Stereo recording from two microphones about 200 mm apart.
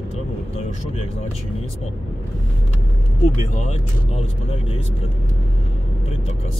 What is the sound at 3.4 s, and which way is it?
Speech, 35° left (ahead or behind).